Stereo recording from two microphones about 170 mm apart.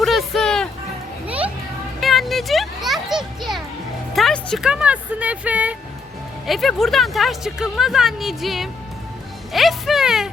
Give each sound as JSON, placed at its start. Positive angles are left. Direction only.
{"t": 0.0, "sound": "speech", "side_deg": 0}
{"t": 2.0, "sound": "speech", "side_deg": 0}
{"t": 9.5, "sound": "a sound", "side_deg": 0}